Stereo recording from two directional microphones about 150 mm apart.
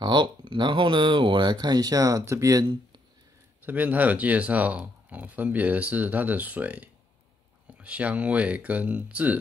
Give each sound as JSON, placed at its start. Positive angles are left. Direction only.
{"t": 0.0, "sound": "speech", "side_deg": -30}
{"t": 3.6, "sound": "speech", "side_deg": -10}